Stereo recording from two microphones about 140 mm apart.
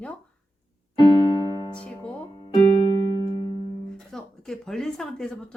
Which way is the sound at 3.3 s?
35° left (ahead or behind).